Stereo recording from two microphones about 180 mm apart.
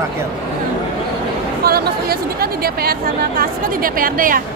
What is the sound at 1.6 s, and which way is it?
A woman's voice, 55° right (ahead or behind).